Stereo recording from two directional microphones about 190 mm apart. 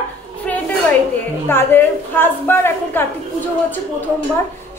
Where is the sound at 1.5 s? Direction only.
10° left (ahead or behind).